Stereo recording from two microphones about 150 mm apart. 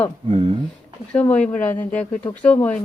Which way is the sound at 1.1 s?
10° left (ahead or behind).